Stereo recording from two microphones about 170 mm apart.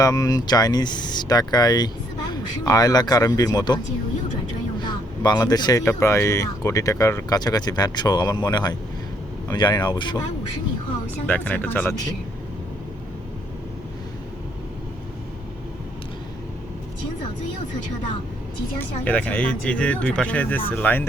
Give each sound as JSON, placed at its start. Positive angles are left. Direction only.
{"t": 0.0, "sound": "speech", "side_deg": 20}
{"t": 4.8, "sound": "speech", "side_deg": 25}
{"t": 11.1, "sound": "speech", "side_deg": 10}
{"t": 18.8, "sound": "speech", "side_deg": 10}